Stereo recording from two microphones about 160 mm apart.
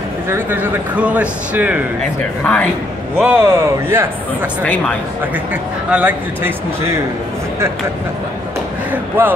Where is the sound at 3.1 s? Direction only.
10° right (ahead or behind).